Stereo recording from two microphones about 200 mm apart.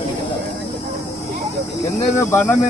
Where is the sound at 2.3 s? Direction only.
10° left (ahead or behind).